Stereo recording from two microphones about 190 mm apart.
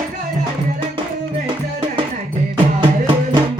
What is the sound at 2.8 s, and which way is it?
Music, 30° right (ahead or behind).